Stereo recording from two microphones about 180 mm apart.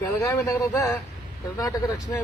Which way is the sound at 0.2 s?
20° left (ahead or behind).